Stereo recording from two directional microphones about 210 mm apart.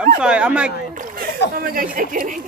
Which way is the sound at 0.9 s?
40° right (ahead or behind).